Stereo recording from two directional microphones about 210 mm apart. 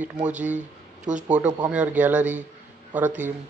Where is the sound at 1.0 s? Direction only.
35° right (ahead or behind).